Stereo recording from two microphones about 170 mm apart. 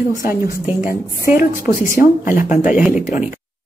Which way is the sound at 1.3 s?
55° left (ahead or behind).